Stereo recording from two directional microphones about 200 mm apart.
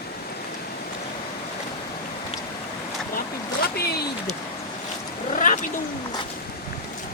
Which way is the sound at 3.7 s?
50° left (ahead or behind).